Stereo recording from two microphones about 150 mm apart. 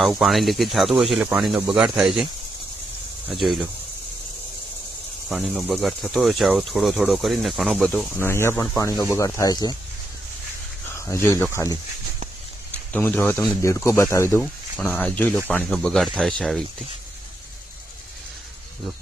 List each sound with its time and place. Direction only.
0.0 s speech: centre (ahead or behind)
3.2 s speech: centre (ahead or behind)
5.3 s speech: centre (ahead or behind)
8.2 s speech: 15° left (ahead or behind)
10.9 s speech: 20° left (ahead or behind)
12.9 s speech: 10° left (ahead or behind)
14.8 s speech: 10° left (ahead or behind)